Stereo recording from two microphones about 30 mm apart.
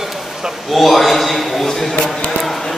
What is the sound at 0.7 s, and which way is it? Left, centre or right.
A man's voice, centre.